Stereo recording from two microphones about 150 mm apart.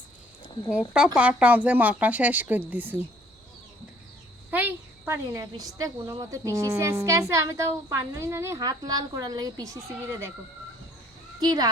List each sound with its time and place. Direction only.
0.7 s speech: 5° right (ahead or behind)
4.5 s a woman's voice: 15° right (ahead or behind)
11.3 s a child's voice: 25° right (ahead or behind)